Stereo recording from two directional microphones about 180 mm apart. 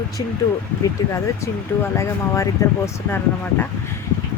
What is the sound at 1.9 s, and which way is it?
Speech, 15° left (ahead or behind).